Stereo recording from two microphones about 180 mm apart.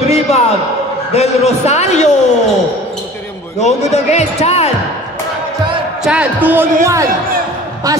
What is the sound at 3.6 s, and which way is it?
A man's voice, 40° left (ahead or behind).